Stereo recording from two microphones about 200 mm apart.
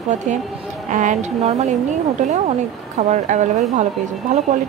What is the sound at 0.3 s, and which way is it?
Speech, 35° right (ahead or behind).